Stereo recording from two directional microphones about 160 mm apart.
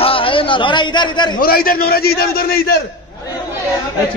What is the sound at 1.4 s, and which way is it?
A man's voice, 65° left (ahead or behind).